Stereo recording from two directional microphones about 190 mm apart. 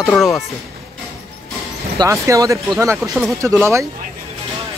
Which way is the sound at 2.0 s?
15° right (ahead or behind).